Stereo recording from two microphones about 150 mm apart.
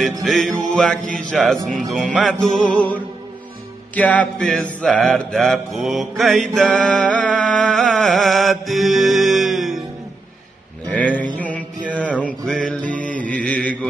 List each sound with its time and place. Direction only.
0.0 s mantra: centre (ahead or behind)
11.3 s mantra: 10° left (ahead or behind)
11.9 s music: 10° left (ahead or behind)
13.0 s mantra: 60° right (ahead or behind)
13.3 s mantra: 10° left (ahead or behind)